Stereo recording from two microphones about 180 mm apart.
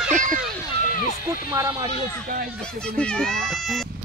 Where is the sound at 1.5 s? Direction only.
15° right (ahead or behind).